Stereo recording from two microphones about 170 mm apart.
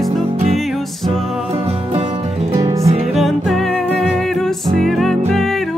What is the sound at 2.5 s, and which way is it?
Music, 30° right (ahead or behind).